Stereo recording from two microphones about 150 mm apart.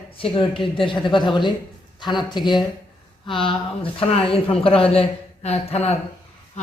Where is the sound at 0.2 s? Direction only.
35° left (ahead or behind).